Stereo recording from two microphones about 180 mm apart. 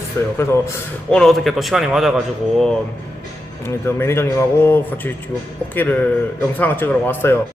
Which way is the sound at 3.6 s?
15° left (ahead or behind).